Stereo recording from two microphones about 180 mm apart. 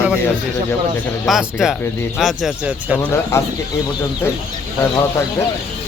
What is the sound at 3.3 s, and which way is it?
Speech, 15° left (ahead or behind).